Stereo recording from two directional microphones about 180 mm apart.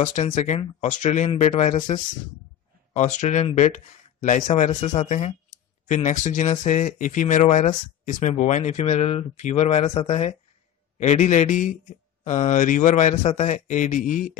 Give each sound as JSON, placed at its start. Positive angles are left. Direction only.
{"t": 0.0, "sound": "a man's voice", "side_deg": 40}